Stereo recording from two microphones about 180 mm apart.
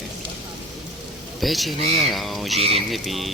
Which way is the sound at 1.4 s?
Centre (ahead or behind).